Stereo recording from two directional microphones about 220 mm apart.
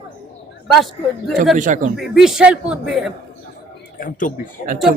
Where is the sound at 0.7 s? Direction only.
Centre (ahead or behind).